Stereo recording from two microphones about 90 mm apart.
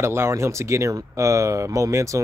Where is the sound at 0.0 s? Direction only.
30° right (ahead or behind).